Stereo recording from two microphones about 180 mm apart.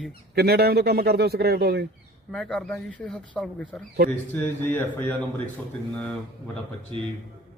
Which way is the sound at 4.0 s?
65° right (ahead or behind).